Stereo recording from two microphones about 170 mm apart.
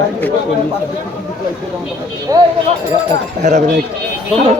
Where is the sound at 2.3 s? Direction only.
20° right (ahead or behind).